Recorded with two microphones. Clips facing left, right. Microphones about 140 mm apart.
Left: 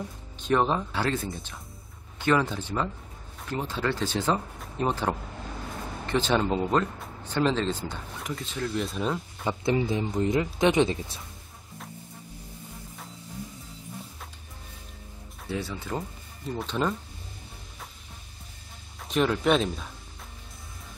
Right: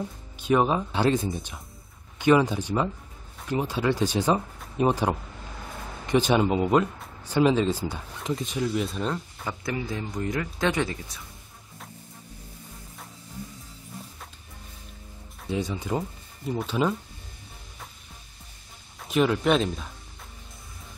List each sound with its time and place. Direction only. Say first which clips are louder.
0.4 s speech: right 2 dB; 10° right (ahead or behind)
8.2 s speech: right 5 dB; 20° right (ahead or behind); by 9.5 s 5° left (ahead or behind)
9.5 s speech: left 5 dB; 25° left (ahead or behind)
15.5 s speech: right 4 dB; 15° right (ahead or behind)
16.4 s speech: right 3 dB; 5° right (ahead or behind)
18.9 s speech: right 2 dB; 5° right (ahead or behind)